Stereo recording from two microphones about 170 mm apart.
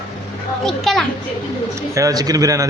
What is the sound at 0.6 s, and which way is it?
Speech, centre (ahead or behind).